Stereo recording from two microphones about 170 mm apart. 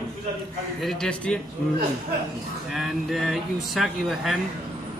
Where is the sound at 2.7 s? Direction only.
Centre (ahead or behind).